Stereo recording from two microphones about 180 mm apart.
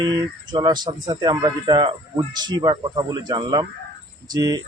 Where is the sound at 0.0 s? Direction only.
25° right (ahead or behind).